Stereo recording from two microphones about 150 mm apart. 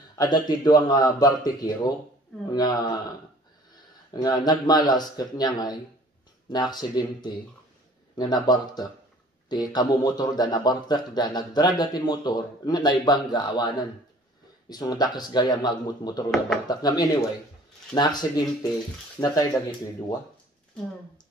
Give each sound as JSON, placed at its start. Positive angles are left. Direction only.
{"t": 0.1, "sound": "speech", "side_deg": 25}
{"t": 4.1, "sound": "speech", "side_deg": 25}